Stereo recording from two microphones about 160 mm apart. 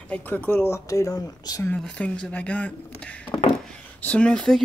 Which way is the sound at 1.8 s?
5° left (ahead or behind).